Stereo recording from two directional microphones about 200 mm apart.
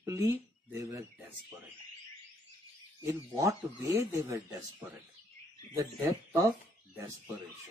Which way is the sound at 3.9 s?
15° right (ahead or behind).